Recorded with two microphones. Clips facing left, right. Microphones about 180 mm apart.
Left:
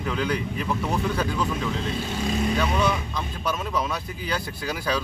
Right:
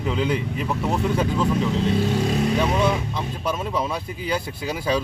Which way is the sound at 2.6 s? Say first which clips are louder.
Right 3 dB; 25° right (ahead or behind).